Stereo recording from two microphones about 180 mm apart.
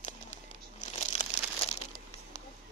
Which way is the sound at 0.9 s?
40° left (ahead or behind).